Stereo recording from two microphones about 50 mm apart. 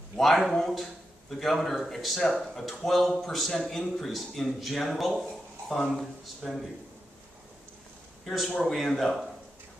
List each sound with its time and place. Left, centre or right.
0.2 s a man's voice: centre
8.5 s speech: centre
8.7 s a man's voice: centre